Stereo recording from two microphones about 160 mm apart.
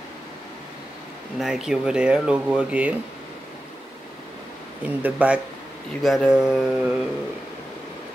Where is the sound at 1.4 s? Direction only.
5° right (ahead or behind).